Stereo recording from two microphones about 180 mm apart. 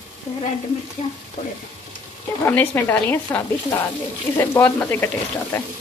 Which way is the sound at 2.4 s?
10° left (ahead or behind).